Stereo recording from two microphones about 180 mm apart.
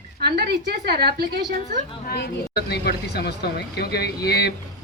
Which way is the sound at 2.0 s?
65° left (ahead or behind).